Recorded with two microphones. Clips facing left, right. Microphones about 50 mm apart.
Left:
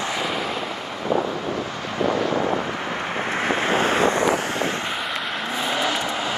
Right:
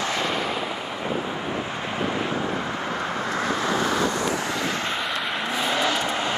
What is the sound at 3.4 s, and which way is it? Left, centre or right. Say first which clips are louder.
Wind noise: left 4 dB; left.